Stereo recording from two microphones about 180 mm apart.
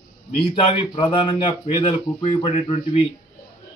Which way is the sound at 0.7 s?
25° left (ahead or behind).